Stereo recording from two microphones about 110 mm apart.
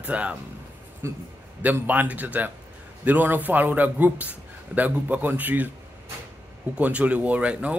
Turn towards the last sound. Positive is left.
turn(degrees=-10)  # may be behind; listen again after turning